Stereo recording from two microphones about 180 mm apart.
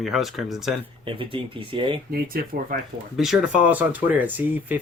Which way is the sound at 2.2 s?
55° right (ahead or behind).